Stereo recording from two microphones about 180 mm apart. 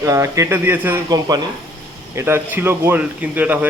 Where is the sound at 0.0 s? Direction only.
15° right (ahead or behind).